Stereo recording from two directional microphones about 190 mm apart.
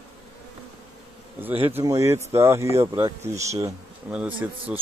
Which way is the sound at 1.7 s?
15° right (ahead or behind).